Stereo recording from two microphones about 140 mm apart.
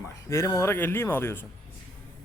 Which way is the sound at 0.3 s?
20° left (ahead or behind).